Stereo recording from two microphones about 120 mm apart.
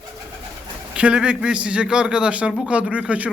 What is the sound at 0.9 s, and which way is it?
A man's voice, 10° right (ahead or behind).